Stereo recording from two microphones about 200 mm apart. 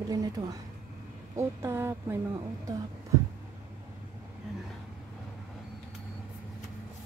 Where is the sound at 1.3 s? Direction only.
15° right (ahead or behind).